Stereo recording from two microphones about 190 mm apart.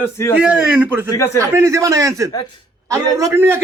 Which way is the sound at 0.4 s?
5° right (ahead or behind).